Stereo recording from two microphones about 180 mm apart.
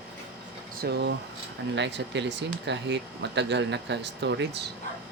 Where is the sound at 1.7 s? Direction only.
75° right (ahead or behind).